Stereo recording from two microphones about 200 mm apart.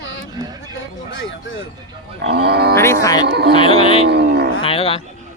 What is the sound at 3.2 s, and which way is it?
Music, 55° right (ahead or behind).